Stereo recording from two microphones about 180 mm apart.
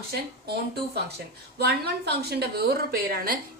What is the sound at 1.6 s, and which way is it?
A woman's voice, 65° right (ahead or behind).